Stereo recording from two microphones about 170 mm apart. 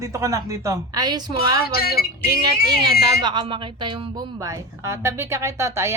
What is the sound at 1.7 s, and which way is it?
Speech, 65° left (ahead or behind).